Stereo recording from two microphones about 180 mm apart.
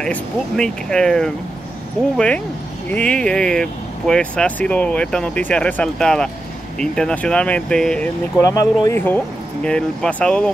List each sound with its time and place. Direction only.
0.0 s speech: 5° left (ahead or behind)
8.4 s speech: 20° left (ahead or behind)